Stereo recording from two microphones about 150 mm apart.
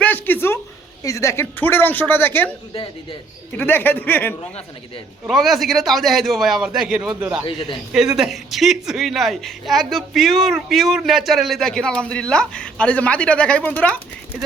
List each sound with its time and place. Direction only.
0.0 s a sound: 10° left (ahead or behind)
1.0 s speech: 20° left (ahead or behind)
2.7 s speech: 35° left (ahead or behind)
3.6 s speech: 15° left (ahead or behind)
5.3 s speech: centre (ahead or behind)
7.4 s speech: 35° left (ahead or behind)
7.9 s speech: 5° right (ahead or behind)